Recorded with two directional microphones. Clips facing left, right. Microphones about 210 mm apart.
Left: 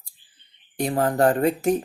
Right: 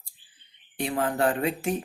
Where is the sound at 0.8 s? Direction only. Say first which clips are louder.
Left 5 dB; 40° left (ahead or behind).